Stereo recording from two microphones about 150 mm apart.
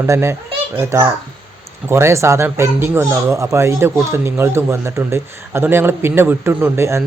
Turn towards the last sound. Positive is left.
turn(degrees=-20)  # may be behind; listen again after turning